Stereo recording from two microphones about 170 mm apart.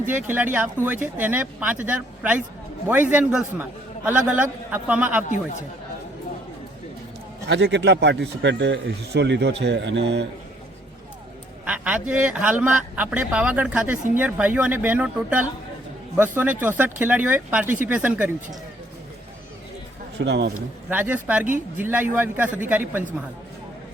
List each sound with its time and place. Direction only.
0.3 s a man's voice: 10° right (ahead or behind)
7.4 s a man's voice: 90° right
11.6 s a man's voice: 10° right (ahead or behind)
20.1 s speech: 90° right
20.9 s a man's voice: 10° right (ahead or behind)